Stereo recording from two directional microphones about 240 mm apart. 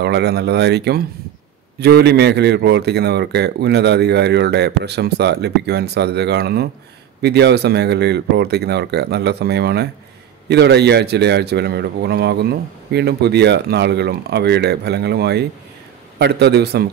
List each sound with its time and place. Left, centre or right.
0.0 s a man's voice: right